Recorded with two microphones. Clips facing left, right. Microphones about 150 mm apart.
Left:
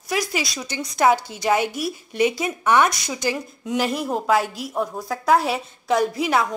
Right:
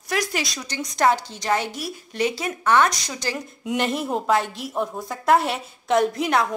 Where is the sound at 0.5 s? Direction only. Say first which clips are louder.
Left 1 dB; 10° left (ahead or behind).